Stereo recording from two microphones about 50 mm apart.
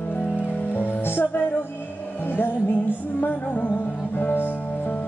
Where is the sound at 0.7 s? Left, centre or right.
Left.